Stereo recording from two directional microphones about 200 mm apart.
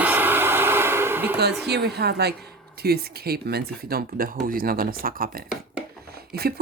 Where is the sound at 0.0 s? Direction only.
10° right (ahead or behind).